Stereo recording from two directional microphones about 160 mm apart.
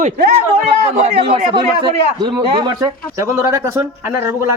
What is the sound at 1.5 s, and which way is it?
A man's voice, 30° right (ahead or behind).